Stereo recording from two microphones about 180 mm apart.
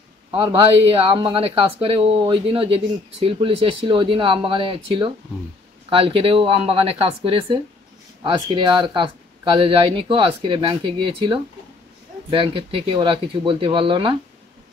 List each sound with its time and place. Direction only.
0.3 s speech: 30° right (ahead or behind)